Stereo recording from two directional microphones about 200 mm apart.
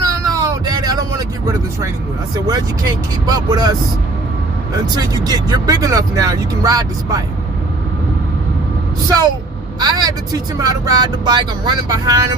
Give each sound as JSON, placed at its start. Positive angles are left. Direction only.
{"t": 0.0, "sound": "vehicle", "side_deg": -15}
{"t": 2.5, "sound": "speech", "side_deg": -20}
{"t": 4.9, "sound": "speech", "side_deg": -20}
{"t": 9.8, "sound": "speech", "side_deg": -20}